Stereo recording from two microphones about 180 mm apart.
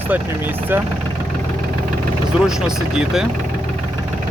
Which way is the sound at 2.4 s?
5° right (ahead or behind).